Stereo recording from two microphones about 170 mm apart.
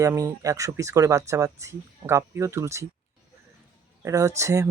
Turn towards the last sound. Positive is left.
turn(degrees=-15)  # may be behind; listen again after turning